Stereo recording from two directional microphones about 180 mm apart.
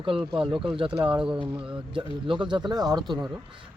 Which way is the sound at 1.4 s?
30° right (ahead or behind).